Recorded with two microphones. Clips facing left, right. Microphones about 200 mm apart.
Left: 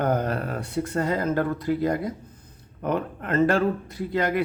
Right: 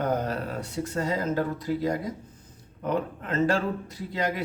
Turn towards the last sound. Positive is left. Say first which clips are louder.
# left 5 dB
turn(degrees=60)  # may be behind; listen again after turning